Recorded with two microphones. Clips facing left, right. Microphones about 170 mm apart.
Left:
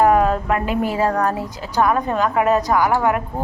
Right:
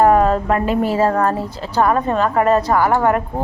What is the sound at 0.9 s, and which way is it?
A woman's voice, centre (ahead or behind).